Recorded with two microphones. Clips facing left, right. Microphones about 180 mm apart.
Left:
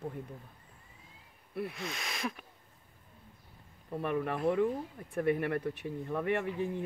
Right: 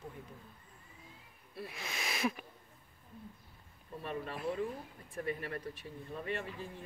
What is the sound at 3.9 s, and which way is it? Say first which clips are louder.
Speech: left 8 dB; 65° left (ahead or behind).